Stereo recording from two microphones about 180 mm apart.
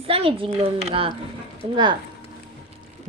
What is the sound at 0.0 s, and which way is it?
Speech, 30° right (ahead or behind).